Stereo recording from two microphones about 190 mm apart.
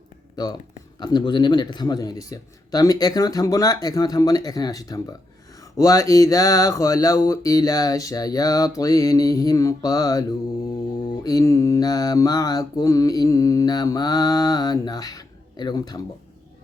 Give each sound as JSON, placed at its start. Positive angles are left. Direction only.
{"t": 0.4, "sound": "mantra", "side_deg": 20}